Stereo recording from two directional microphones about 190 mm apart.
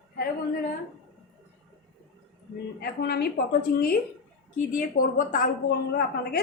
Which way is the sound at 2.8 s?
55° left (ahead or behind).